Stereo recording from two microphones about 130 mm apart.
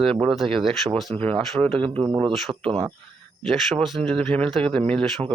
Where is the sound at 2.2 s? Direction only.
Centre (ahead or behind).